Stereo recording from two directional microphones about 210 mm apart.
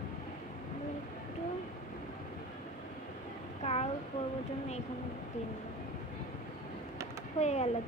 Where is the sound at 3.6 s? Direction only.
30° left (ahead or behind).